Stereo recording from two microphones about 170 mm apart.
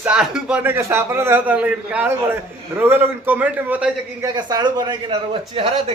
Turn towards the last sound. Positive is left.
turn(degrees=-35)  # may be behind; listen again after turning